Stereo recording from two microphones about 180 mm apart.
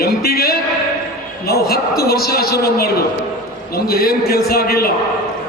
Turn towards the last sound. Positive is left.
turn(degrees=60)  # may be behind; listen again after turning